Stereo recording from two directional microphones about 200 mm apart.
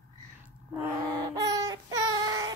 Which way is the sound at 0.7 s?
15° right (ahead or behind).